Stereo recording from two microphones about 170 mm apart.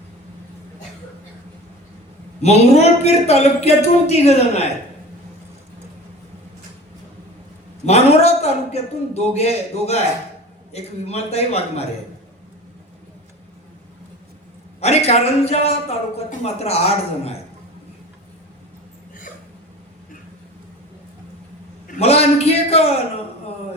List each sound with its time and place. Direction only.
2.4 s speech: 40° left (ahead or behind)
7.9 s speech: 40° left (ahead or behind)
14.8 s speech: 40° left (ahead or behind)
21.8 s a man's voice: 40° left (ahead or behind)